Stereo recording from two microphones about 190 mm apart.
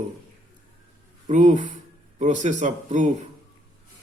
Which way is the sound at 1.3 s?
40° right (ahead or behind).